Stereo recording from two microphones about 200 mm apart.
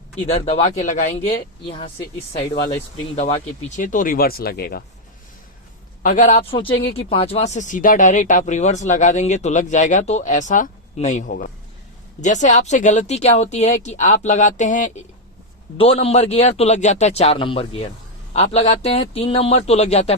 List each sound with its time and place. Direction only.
0.3 s speech: 30° left (ahead or behind)
1.3 s speech: 25° left (ahead or behind)
3.8 s speech: 40° left (ahead or behind)
6.0 s speech: 40° left (ahead or behind)